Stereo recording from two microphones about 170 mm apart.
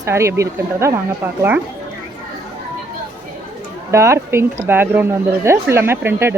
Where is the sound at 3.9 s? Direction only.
15° right (ahead or behind).